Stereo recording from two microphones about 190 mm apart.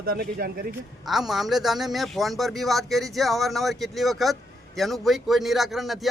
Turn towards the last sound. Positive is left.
turn(degrees=0)  # may be behind; listen again after turning